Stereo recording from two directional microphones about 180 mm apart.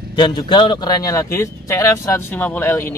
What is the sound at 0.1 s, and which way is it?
A man's voice, 25° left (ahead or behind).